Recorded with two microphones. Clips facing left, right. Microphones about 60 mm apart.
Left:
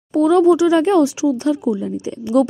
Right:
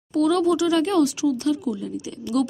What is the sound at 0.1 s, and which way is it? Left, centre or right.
Speech, left.